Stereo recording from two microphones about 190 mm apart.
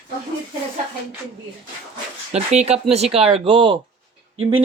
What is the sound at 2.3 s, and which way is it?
Speech, 35° right (ahead or behind).